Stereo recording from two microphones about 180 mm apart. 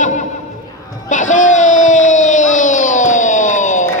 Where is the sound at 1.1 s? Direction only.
45° left (ahead or behind).